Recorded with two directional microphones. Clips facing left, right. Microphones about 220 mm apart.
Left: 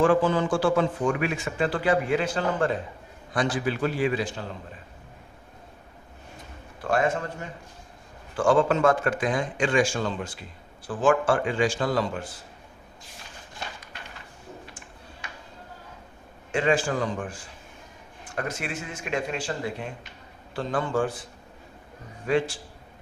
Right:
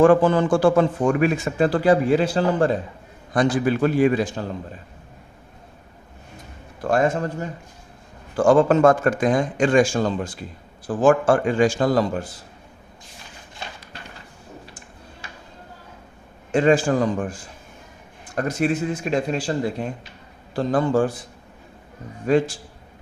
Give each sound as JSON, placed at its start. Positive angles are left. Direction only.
{"t": 0.0, "sound": "a man's voice", "side_deg": -50}
{"t": 3.3, "sound": "speech", "side_deg": -50}
{"t": 6.8, "sound": "a man's voice", "side_deg": -40}
{"t": 14.7, "sound": "tick-tock", "side_deg": -35}
{"t": 16.5, "sound": "a man's voice", "side_deg": -40}
{"t": 18.3, "sound": "a man's voice", "side_deg": -40}
{"t": 22.3, "sound": "a man's voice", "side_deg": -40}